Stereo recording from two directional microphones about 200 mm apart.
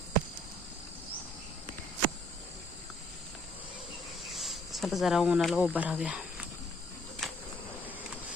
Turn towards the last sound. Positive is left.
turn(degrees=0)  # may be behind; listen again after turning